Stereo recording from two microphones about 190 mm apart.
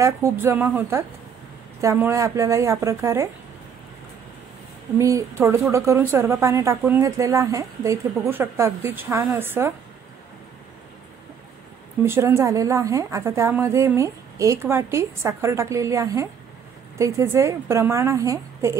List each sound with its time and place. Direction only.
0.0 s speech: 15° right (ahead or behind)
4.9 s speech: 15° right (ahead or behind)
12.0 s speech: 15° right (ahead or behind)